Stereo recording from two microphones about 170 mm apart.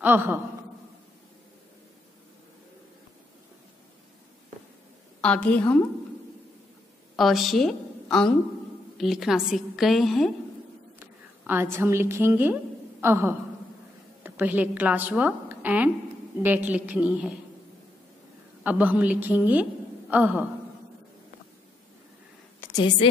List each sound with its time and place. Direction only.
0.0 s a woman's voice: 10° right (ahead or behind)
5.2 s a woman's voice: 5° left (ahead or behind)
7.2 s a woman's voice: centre (ahead or behind)
11.0 s a woman's voice: 10° right (ahead or behind)
18.6 s a woman's voice: 10° right (ahead or behind)
22.6 s a sound: 25° left (ahead or behind)